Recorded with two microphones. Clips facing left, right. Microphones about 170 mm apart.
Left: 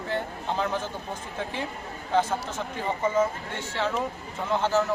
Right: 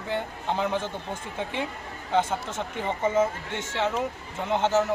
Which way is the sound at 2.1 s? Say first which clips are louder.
Even; 25° right (ahead or behind).